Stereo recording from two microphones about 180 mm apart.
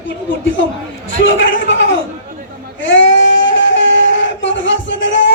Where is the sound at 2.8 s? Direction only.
90° left.